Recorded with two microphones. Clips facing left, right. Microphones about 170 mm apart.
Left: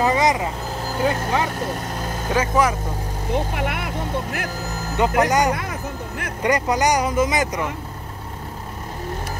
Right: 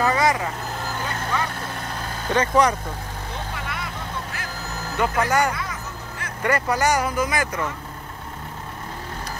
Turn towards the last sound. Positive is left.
turn(degrees=20)  # may be behind; listen again after turning